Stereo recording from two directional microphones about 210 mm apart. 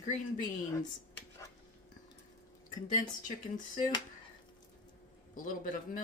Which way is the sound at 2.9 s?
40° left (ahead or behind).